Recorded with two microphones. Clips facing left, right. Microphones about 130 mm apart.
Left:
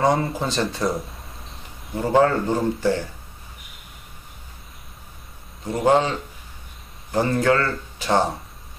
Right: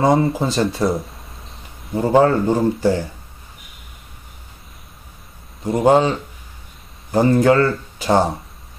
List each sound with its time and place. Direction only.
0.2 s speech: 5° right (ahead or behind)
0.8 s a sound: centre (ahead or behind)
2.0 s speech: 20° right (ahead or behind)
5.7 s speech: 25° right (ahead or behind)
8.0 s speech: 15° right (ahead or behind)